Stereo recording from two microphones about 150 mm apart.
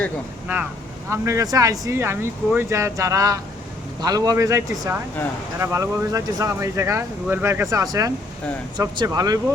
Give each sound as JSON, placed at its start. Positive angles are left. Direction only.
{"t": 0.4, "sound": "speech", "side_deg": -10}